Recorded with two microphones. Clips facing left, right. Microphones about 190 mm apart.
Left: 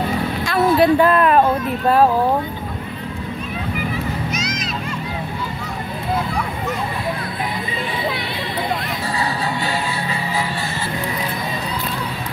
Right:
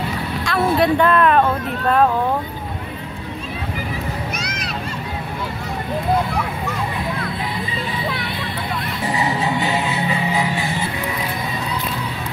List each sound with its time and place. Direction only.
0.5 s speech: 5° left (ahead or behind)
4.4 s a sound: 60° right (ahead or behind)
9.1 s music: 20° right (ahead or behind)